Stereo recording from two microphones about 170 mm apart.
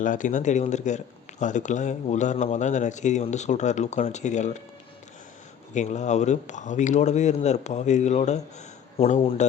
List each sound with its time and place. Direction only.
0.0 s speech: 50° left (ahead or behind)
5.7 s speech: 45° left (ahead or behind)